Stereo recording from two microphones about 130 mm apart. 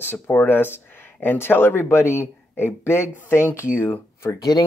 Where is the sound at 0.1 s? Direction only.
15° left (ahead or behind).